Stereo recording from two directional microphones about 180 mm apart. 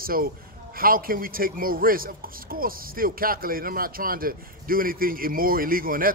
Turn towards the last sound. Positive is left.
turn(degrees=-50)  # may be behind; listen again after turning